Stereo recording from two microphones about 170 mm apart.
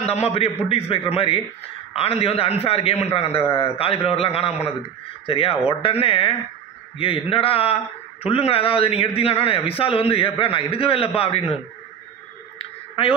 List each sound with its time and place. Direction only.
0.0 s a man's voice: 40° left (ahead or behind)